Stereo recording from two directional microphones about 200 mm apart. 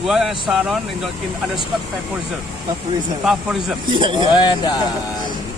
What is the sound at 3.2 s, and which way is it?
Speech, 5° right (ahead or behind).